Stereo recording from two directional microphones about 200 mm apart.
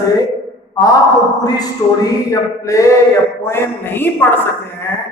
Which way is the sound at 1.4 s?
20° left (ahead or behind).